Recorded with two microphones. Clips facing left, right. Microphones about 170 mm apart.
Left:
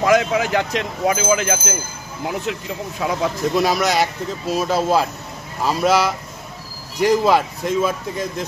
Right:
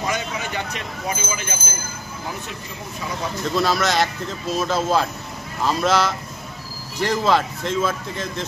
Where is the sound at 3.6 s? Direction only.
15° left (ahead or behind).